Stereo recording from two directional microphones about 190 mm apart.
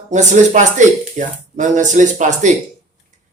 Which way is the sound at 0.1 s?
40° right (ahead or behind).